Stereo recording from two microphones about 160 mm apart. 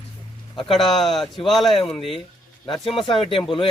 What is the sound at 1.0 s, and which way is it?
A man's voice, centre (ahead or behind).